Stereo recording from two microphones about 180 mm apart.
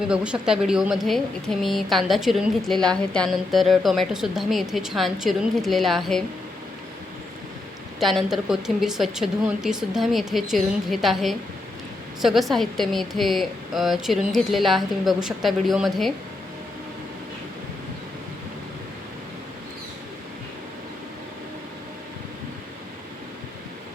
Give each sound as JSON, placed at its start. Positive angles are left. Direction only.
{"t": 0.0, "sound": "a woman's voice", "side_deg": -5}
{"t": 7.9, "sound": "a woman's voice", "side_deg": 0}